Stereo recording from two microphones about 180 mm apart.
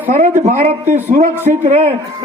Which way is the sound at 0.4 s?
40° right (ahead or behind).